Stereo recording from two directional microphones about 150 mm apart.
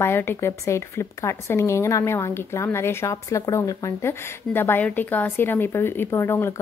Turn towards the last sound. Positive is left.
turn(degrees=15)  # may be behind; listen again after turning